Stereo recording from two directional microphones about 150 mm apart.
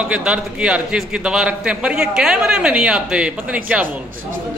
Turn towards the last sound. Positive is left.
turn(degrees=-10)  # may be behind; listen again after turning